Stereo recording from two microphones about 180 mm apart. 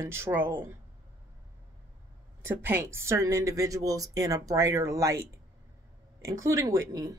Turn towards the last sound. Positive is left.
turn(degrees=-20)  # may be behind; listen again after turning